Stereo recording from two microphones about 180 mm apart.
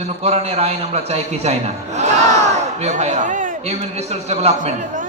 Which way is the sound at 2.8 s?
40° right (ahead or behind).